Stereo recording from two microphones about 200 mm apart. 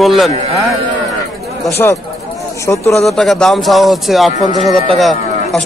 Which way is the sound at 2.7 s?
10° left (ahead or behind).